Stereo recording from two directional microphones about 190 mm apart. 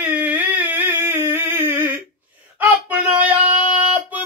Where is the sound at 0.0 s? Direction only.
10° right (ahead or behind).